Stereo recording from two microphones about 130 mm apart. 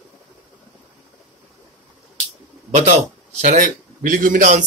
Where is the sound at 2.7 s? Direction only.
65° right (ahead or behind); by 4.7 s 80° right.